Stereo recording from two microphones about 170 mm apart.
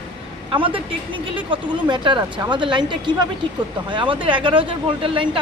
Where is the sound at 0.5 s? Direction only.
30° right (ahead or behind).